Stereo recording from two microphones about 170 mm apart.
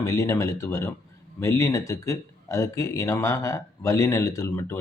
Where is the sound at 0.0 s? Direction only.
20° left (ahead or behind).